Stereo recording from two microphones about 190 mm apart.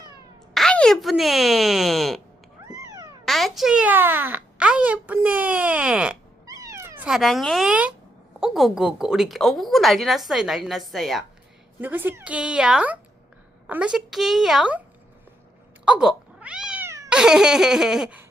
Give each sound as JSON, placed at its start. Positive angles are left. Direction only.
{"t": 0.5, "sound": "speech", "side_deg": 5}
{"t": 2.6, "sound": "cat", "side_deg": -20}
{"t": 3.2, "sound": "speech", "side_deg": 0}
{"t": 6.4, "sound": "cat", "side_deg": -20}
{"t": 8.4, "sound": "speech", "side_deg": 0}
{"t": 11.8, "sound": "speech", "side_deg": -10}
{"t": 15.8, "sound": "cat", "side_deg": -5}
{"t": 17.2, "sound": "speech", "side_deg": -5}